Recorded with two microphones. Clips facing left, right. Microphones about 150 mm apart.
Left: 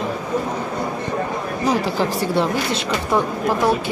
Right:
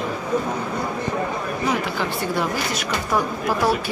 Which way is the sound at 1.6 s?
35° left (ahead or behind).